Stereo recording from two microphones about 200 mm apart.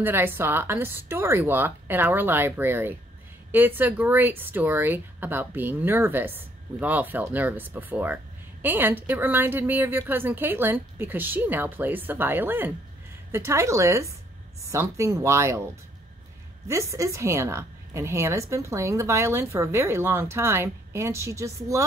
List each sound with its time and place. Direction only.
0.0 s a woman's voice: 10° right (ahead or behind)
16.6 s a woman's voice: 15° right (ahead or behind)